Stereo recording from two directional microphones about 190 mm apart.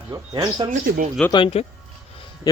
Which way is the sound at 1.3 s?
25° left (ahead or behind).